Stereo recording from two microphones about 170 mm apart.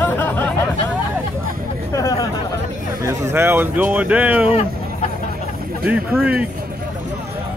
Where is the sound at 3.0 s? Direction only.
20° right (ahead or behind).